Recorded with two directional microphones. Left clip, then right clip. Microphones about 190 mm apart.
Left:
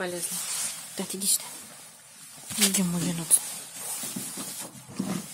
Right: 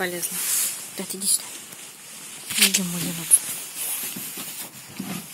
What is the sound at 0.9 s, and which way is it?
Speech, centre (ahead or behind).